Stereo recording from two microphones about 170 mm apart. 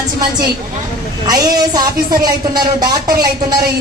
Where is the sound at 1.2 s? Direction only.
25° right (ahead or behind).